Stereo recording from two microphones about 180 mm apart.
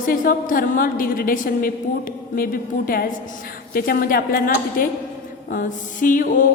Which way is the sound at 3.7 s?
55° left (ahead or behind).